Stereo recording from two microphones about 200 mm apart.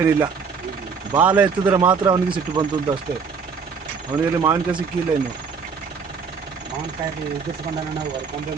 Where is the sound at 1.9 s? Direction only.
20° right (ahead or behind).